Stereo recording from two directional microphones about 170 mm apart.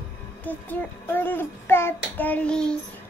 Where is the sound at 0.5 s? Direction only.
10° left (ahead or behind).